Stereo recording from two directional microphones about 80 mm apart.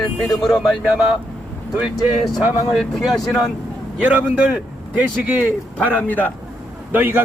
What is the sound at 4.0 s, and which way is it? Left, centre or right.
Speech, centre.